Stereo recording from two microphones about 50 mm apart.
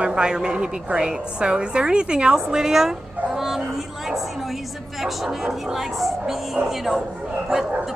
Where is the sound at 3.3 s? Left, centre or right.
Centre.